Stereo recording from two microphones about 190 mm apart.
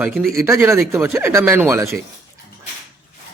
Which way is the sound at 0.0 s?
Centre (ahead or behind).